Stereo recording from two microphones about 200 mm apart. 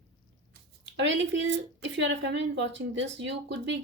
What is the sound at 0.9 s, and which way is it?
A woman's voice, 65° right (ahead or behind).